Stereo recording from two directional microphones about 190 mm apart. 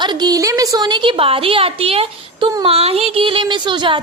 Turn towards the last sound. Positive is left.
turn(degrees=-25)  # may be behind; listen again after turning